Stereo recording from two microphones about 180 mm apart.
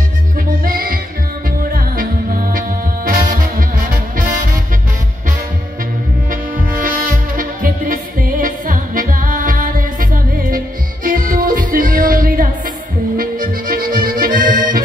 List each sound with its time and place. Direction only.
0.7 s music: 50° right (ahead or behind)
6.7 s music: 50° right (ahead or behind)
13.2 s accordion: 55° right (ahead or behind)